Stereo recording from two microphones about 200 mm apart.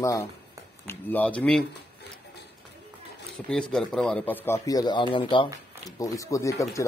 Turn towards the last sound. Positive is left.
turn(degrees=15)  # may be behind; listen again after turning